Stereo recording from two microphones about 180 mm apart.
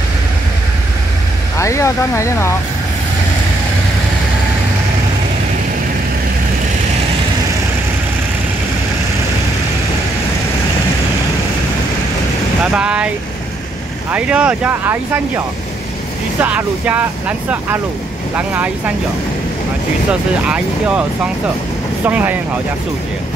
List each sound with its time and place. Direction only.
1.6 s speech: 15° left (ahead or behind)
12.7 s speech: 5° right (ahead or behind)
14.1 s speech: 5° right (ahead or behind)
20.1 s speech: 5° right (ahead or behind)
22.0 s speech: 10° right (ahead or behind)